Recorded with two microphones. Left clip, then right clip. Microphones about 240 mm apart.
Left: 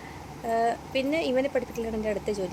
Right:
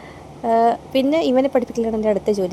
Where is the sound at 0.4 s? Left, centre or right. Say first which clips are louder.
Right 10 dB; right.